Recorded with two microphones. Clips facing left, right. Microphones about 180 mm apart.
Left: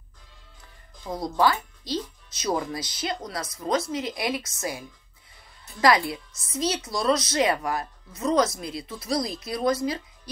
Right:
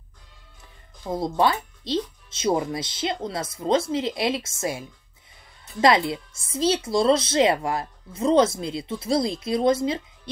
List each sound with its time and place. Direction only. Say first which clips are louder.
1.1 s speech: right 1 dB; 25° right (ahead or behind)